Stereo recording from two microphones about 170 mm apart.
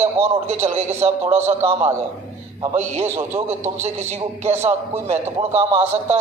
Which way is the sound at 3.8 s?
40° right (ahead or behind).